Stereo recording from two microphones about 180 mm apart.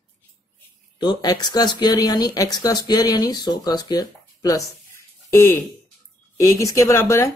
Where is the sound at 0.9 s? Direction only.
25° left (ahead or behind).